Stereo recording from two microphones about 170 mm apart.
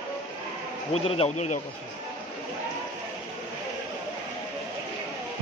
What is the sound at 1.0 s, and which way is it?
Speech, 35° left (ahead or behind).